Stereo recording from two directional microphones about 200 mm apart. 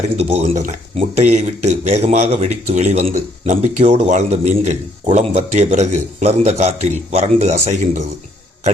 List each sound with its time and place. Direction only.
0.2 s speech: 30° right (ahead or behind)